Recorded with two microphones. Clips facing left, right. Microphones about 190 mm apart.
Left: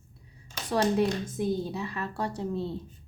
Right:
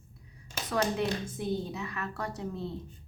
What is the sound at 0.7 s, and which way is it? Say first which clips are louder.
Speech: left 4 dB; 35° left (ahead or behind).